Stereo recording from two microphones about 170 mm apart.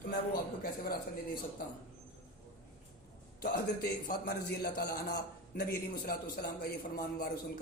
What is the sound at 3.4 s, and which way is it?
A man's voice, 55° left (ahead or behind).